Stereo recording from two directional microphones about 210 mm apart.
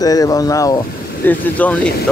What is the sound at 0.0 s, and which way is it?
Speech, 15° left (ahead or behind).